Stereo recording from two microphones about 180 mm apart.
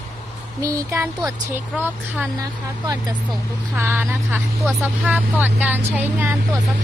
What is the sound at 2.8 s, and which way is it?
Speech, 20° right (ahead or behind).